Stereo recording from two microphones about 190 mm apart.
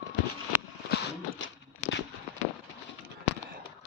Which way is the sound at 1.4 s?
75° left (ahead or behind).